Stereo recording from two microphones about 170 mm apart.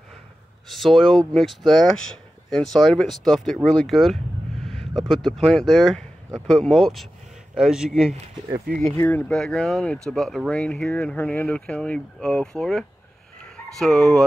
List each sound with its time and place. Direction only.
0.7 s speech: centre (ahead or behind)
8.9 s speech: 10° left (ahead or behind)
13.4 s dog: 5° left (ahead or behind)